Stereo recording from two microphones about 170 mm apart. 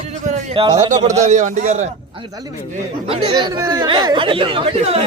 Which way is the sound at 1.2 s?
45° right (ahead or behind).